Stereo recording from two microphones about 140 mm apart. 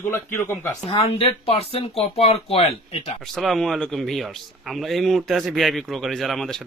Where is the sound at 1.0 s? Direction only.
45° left (ahead or behind).